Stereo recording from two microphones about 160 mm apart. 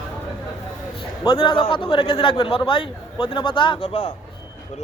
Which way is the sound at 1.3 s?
30° left (ahead or behind).